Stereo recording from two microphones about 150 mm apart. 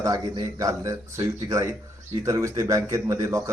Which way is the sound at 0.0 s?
20° right (ahead or behind).